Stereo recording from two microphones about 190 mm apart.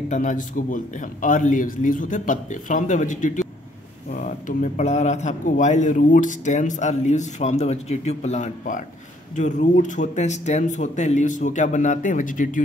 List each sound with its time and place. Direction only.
0.1 s a man's voice: 40° left (ahead or behind)